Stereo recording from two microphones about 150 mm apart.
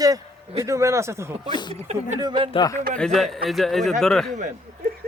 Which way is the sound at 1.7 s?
45° right (ahead or behind).